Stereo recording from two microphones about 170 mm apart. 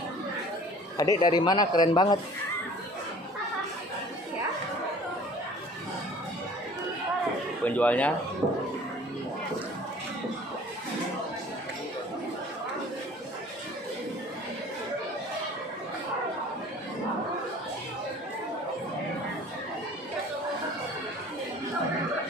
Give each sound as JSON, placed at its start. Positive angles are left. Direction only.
{"t": 0.9, "sound": "a man's voice", "side_deg": 20}
{"t": 7.6, "sound": "speech", "side_deg": 10}